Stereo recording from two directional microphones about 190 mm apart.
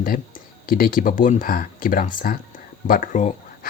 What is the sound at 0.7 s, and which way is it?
Speech, 50° left (ahead or behind).